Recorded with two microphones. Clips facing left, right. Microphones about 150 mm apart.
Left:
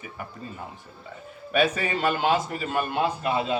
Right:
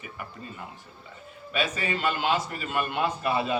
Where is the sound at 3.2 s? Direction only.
20° left (ahead or behind).